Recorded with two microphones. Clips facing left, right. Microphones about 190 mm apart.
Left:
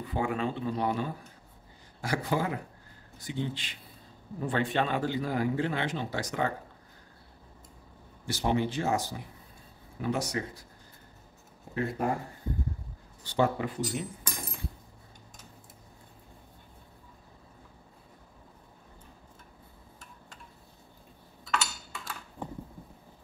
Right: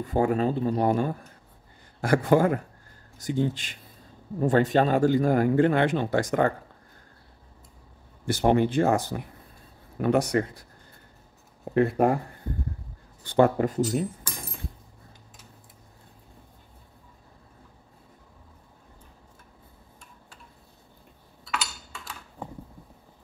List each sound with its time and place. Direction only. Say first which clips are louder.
0.0 s speech: right 7 dB; 45° right (ahead or behind)
8.3 s speech: right 7 dB; 55° right (ahead or behind)
11.7 s speech: right 9 dB; 60° right (ahead or behind)
13.2 s speech: right 7 dB; 50° right (ahead or behind)